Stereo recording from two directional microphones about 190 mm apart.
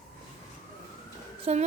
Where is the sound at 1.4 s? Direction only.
35° right (ahead or behind).